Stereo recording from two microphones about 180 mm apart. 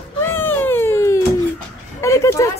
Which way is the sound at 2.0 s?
15° left (ahead or behind).